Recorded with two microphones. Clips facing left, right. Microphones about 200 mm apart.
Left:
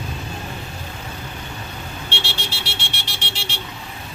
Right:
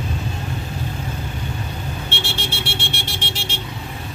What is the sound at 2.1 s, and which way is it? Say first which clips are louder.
Vehicle: right 2 dB; 50° right (ahead or behind).